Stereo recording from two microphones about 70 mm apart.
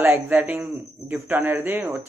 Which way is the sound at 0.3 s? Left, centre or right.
Right.